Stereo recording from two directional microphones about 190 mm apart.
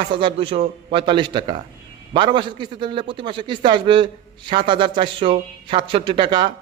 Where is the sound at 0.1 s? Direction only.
30° right (ahead or behind).